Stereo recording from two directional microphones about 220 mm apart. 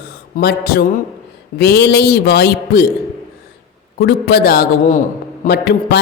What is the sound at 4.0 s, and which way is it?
A woman's voice, 45° left (ahead or behind).